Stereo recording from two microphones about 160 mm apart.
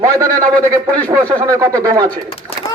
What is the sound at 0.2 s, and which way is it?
A man's voice, 25° right (ahead or behind).